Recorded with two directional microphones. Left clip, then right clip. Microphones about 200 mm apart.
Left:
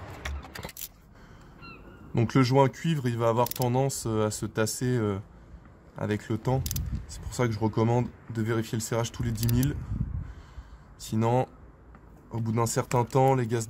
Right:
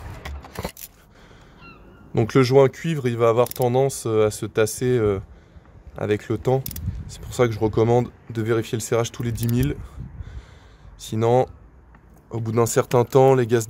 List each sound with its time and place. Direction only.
2.1 s speech: 30° right (ahead or behind)
11.0 s speech: 30° right (ahead or behind)